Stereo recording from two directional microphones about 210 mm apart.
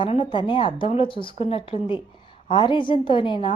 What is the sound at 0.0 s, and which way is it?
A woman's voice, 25° left (ahead or behind).